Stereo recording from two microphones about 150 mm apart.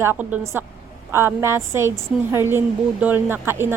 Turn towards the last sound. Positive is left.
turn(degrees=-15)  # may be behind; listen again after turning